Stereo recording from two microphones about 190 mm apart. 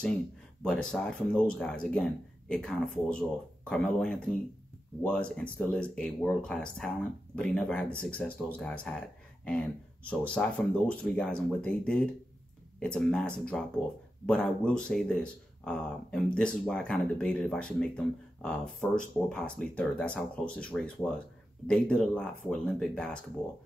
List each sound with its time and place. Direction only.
0.7 s speech: 5° left (ahead or behind)